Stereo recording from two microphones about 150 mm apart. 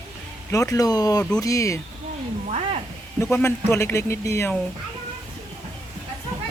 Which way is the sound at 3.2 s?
15° left (ahead or behind).